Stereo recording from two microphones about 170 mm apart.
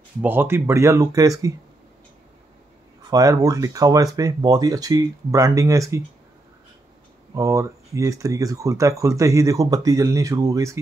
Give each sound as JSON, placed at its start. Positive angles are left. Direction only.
{"t": 0.2, "sound": "speech", "side_deg": -10}
{"t": 3.1, "sound": "speech", "side_deg": -20}
{"t": 7.3, "sound": "speech", "side_deg": -20}